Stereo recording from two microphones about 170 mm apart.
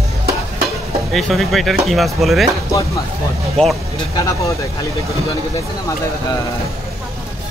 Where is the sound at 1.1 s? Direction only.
Centre (ahead or behind).